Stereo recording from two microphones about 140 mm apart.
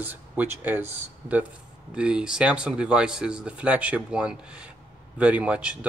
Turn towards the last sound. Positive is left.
turn(degrees=-10)  # may be behind; listen again after turning